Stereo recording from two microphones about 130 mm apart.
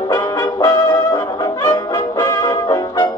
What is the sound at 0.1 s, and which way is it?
Brass instrument, 30° left (ahead or behind).